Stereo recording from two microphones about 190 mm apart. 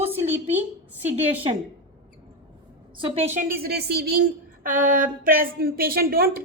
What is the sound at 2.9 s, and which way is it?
Speech, 30° right (ahead or behind).